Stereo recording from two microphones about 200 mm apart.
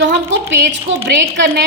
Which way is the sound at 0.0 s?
65° right (ahead or behind).